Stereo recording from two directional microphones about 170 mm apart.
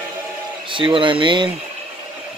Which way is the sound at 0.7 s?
30° right (ahead or behind).